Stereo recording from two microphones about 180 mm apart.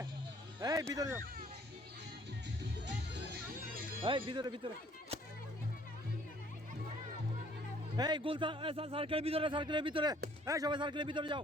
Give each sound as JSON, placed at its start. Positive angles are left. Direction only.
{"t": 0.6, "sound": "music", "side_deg": -20}
{"t": 0.9, "sound": "speech", "side_deg": -15}
{"t": 2.8, "sound": "music", "side_deg": -70}
{"t": 4.0, "sound": "a man's voice", "side_deg": -25}
{"t": 7.9, "sound": "a man's voice", "side_deg": -25}